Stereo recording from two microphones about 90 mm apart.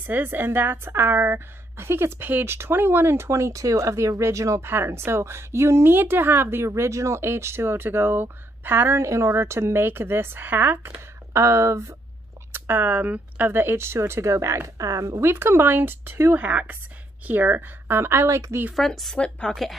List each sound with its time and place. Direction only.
0.0 s a woman's voice: 20° right (ahead or behind)
11.3 s speech: 35° right (ahead or behind)
12.5 s a woman's voice: 25° right (ahead or behind)
18.8 s a woman's voice: centre (ahead or behind)